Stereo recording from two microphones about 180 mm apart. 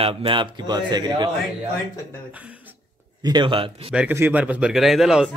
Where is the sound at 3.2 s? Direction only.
25° right (ahead or behind).